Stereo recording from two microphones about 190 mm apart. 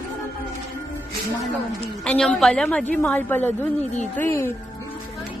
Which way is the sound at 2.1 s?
5° left (ahead or behind).